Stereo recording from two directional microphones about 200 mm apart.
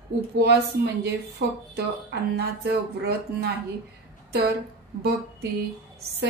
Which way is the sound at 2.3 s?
55° right (ahead or behind).